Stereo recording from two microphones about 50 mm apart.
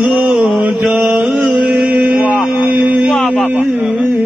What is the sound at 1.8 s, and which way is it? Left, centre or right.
Mantra, right.